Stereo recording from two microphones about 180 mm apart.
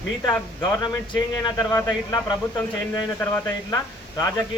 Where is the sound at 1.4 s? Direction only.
20° left (ahead or behind).